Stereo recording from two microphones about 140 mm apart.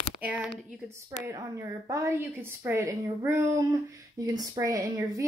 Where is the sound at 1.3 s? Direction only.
20° right (ahead or behind).